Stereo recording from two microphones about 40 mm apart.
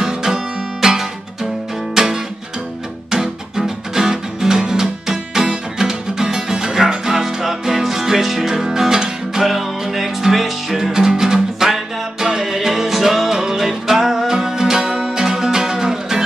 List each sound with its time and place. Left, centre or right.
0.0 s music: centre